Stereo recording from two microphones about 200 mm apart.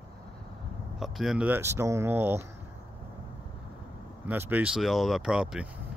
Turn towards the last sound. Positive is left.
turn(degrees=-5)  # may be behind; listen again after turning